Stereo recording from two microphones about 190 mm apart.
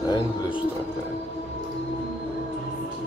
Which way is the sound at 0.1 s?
25° left (ahead or behind).